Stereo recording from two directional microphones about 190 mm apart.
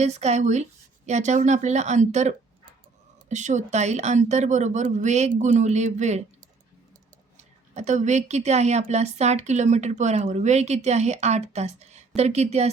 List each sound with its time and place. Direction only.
0.0 s a woman's voice: 35° right (ahead or behind)
7.7 s a woman's voice: 40° right (ahead or behind)